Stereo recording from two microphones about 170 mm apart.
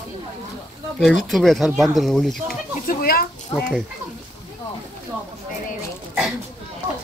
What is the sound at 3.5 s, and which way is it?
Speech, 35° left (ahead or behind).